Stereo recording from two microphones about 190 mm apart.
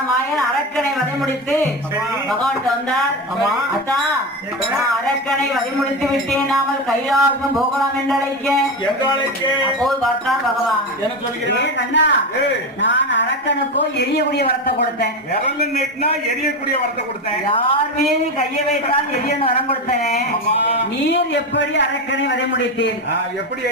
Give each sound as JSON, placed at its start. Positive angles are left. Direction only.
{"t": 6.3, "sound": "speech", "side_deg": 0}
{"t": 9.0, "sound": "speech", "side_deg": 25}
{"t": 9.8, "sound": "speech", "side_deg": 0}
{"t": 11.5, "sound": "a man's voice", "side_deg": 65}
{"t": 17.4, "sound": "a woman's voice", "side_deg": 30}
{"t": 21.1, "sound": "a man's voice", "side_deg": 65}